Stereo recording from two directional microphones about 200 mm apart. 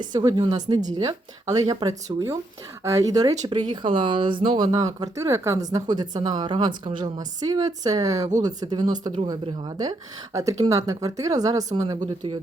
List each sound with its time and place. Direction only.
0.0 s speech: 20° right (ahead or behind)